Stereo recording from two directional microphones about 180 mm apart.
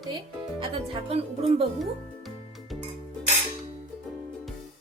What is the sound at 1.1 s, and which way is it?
Speech, 35° right (ahead or behind).